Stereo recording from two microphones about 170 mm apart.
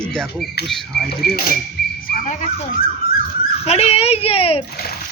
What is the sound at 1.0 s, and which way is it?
Dishes, 65° left (ahead or behind).